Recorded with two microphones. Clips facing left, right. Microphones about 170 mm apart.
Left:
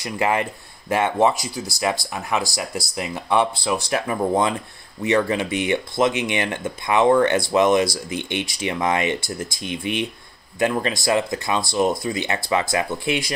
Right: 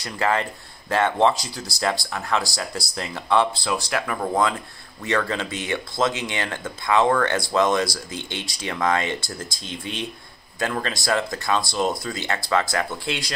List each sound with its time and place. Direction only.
0.0 s speech: 15° left (ahead or behind)